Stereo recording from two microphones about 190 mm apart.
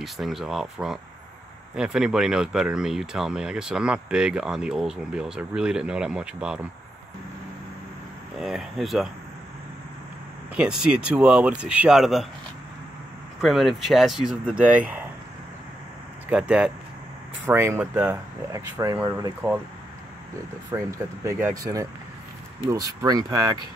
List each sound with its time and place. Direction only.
0.0 s speech: centre (ahead or behind)
8.4 s speech: centre (ahead or behind)
10.5 s speech: 5° right (ahead or behind)
13.4 s speech: centre (ahead or behind)
16.3 s speech: 5° right (ahead or behind)
20.7 s speech: 15° right (ahead or behind)